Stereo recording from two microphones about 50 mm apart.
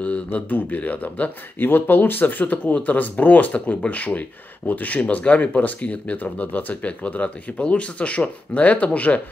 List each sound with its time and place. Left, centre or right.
0.0 s speech: left
1.7 s speech: left